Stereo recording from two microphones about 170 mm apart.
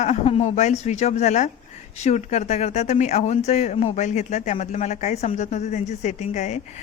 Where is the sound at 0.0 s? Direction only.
40° left (ahead or behind).